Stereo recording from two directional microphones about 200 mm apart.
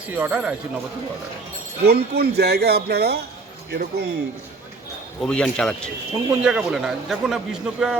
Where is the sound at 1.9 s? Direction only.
55° right (ahead or behind).